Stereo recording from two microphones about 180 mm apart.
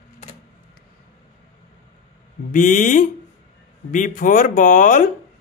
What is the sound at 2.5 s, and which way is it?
Speech, 45° left (ahead or behind).